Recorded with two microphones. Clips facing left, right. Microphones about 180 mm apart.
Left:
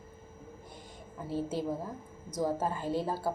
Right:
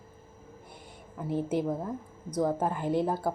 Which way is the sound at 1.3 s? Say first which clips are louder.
Right 5 dB; 15° right (ahead or behind).